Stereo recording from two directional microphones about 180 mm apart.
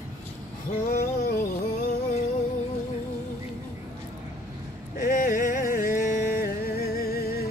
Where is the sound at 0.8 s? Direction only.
60° left (ahead or behind).